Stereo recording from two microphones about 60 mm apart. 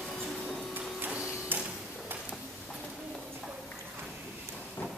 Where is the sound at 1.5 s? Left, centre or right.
Right.